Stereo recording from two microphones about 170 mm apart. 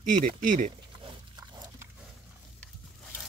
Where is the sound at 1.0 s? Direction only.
25° right (ahead or behind).